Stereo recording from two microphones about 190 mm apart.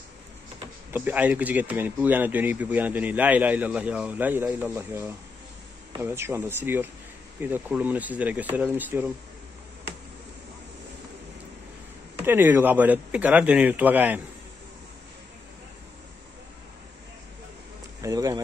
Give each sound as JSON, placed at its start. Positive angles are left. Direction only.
{"t": 0.9, "sound": "speech", "side_deg": -10}
{"t": 12.2, "sound": "speech", "side_deg": -10}
{"t": 18.0, "sound": "speech", "side_deg": -20}